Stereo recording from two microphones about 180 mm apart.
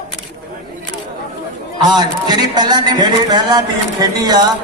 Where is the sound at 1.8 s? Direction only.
20° right (ahead or behind).